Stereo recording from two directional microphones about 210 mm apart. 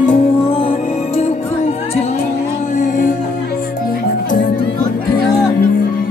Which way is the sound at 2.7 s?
40° left (ahead or behind).